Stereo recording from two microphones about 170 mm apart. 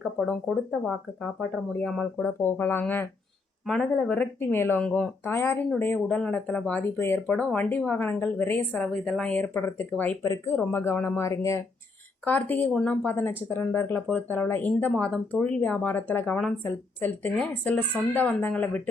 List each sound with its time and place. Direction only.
0.3 s speech: 10° left (ahead or behind)